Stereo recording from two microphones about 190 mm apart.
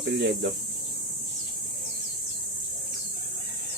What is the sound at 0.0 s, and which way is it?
Speech, 65° right (ahead or behind).